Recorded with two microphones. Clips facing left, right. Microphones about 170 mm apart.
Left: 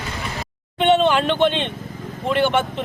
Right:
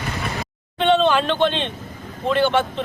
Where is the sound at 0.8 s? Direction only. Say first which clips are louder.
Left 1 dB; 15° left (ahead or behind).